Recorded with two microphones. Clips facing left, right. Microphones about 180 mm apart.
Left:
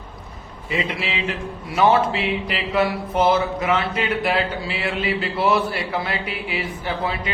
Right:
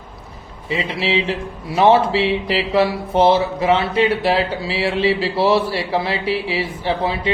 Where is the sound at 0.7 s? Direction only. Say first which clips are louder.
Right 5 dB; 30° right (ahead or behind).